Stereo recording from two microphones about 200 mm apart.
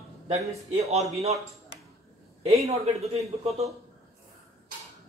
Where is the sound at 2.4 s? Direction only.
30° right (ahead or behind).